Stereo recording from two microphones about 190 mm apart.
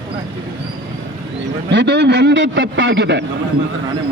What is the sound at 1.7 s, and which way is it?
A man's voice, 65° right (ahead or behind).